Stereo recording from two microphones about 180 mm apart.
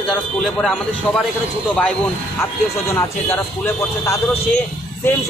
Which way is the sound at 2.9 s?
15° left (ahead or behind).